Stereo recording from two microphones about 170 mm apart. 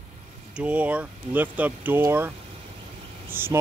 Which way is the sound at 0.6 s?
10° right (ahead or behind).